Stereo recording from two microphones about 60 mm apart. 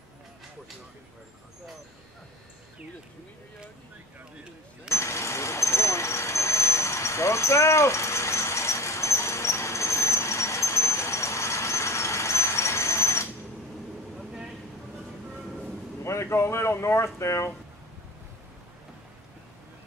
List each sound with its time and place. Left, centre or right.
4.8 s vehicle: left
16.0 s speech: left